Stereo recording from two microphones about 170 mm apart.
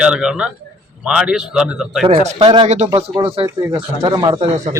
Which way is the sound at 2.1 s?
40° right (ahead or behind).